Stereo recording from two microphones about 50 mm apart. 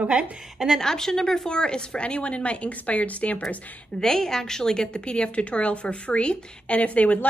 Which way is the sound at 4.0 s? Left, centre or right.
Centre.